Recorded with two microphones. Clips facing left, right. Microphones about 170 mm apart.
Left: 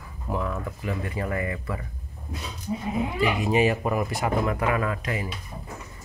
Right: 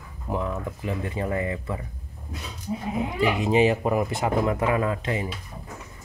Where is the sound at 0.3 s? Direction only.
20° right (ahead or behind).